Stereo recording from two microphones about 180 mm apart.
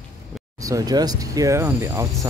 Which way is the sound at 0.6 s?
20° right (ahead or behind).